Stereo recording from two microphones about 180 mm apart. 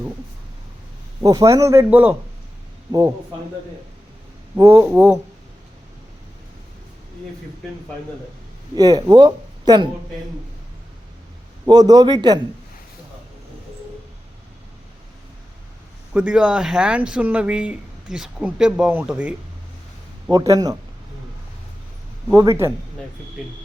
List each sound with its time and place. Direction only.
1.2 s a man's voice: 20° right (ahead or behind)
4.5 s a man's voice: 15° right (ahead or behind)
8.7 s speech: 20° right (ahead or behind)
11.6 s a man's voice: 20° right (ahead or behind)
16.1 s speech: 5° right (ahead or behind)
20.3 s a man's voice: 20° right (ahead or behind)
22.3 s a man's voice: 15° right (ahead or behind)